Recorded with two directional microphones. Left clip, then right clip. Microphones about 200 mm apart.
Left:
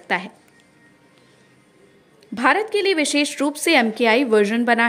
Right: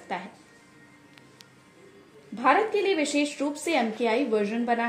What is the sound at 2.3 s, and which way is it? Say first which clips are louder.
A woman's voice: left 4 dB; 35° left (ahead or behind).